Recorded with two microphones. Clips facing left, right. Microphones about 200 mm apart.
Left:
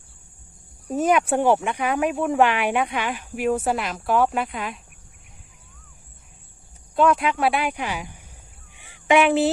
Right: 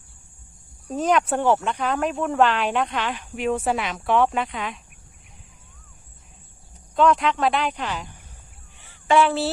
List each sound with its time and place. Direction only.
0.9 s speech: 10° left (ahead or behind)
6.9 s speech: 10° left (ahead or behind)
8.7 s a sound: 15° left (ahead or behind)